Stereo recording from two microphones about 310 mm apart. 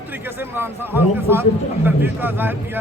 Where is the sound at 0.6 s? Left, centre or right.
Centre.